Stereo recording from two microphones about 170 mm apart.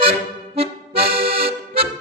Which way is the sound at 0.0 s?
35° right (ahead or behind).